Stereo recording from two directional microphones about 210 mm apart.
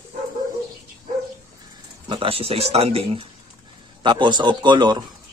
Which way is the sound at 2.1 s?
25° right (ahead or behind).